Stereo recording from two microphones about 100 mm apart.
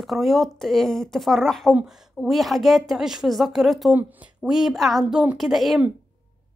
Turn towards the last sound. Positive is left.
turn(degrees=0)  # may be behind; listen again after turning